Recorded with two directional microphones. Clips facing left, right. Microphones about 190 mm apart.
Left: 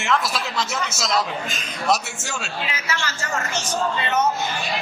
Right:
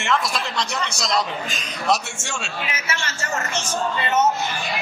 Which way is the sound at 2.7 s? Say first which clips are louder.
Left 1 dB; 25° right (ahead or behind).